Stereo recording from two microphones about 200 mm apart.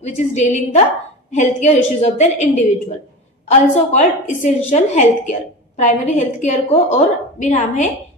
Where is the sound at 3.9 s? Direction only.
35° left (ahead or behind).